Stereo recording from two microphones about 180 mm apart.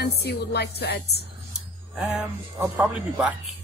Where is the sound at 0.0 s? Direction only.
65° left (ahead or behind).